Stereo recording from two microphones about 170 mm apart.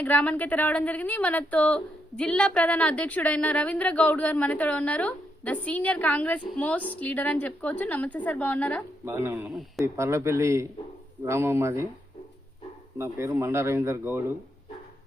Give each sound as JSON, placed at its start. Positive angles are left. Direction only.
{"t": 0.0, "sound": "a woman's voice", "side_deg": 10}
{"t": 9.0, "sound": "speech", "side_deg": -15}
{"t": 9.5, "sound": "speech", "side_deg": 0}
{"t": 9.8, "sound": "speech", "side_deg": -15}
{"t": 13.0, "sound": "speech", "side_deg": -15}